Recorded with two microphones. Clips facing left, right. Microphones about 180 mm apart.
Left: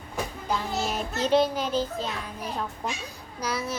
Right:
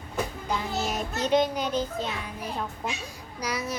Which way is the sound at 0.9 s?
35° left (ahead or behind).